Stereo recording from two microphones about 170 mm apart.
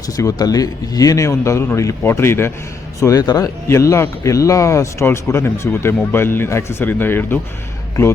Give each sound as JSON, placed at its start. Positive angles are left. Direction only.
{"t": 0.2, "sound": "speech", "side_deg": 20}